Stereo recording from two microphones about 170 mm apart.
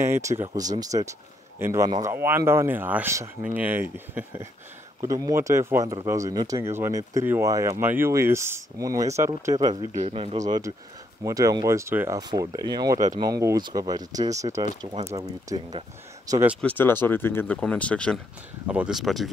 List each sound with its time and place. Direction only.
0.0 s speech: 15° right (ahead or behind)
9.9 s speech: 35° right (ahead or behind)
10.4 s speech: 20° right (ahead or behind)
16.6 s speech: 10° left (ahead or behind)
18.7 s speech: 5° right (ahead or behind)